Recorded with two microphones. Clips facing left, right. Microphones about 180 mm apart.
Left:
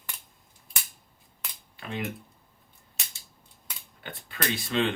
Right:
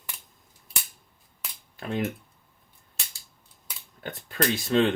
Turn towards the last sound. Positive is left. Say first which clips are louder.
# right 5 dB
turn(degrees=-40)  # may be behind; listen again after turning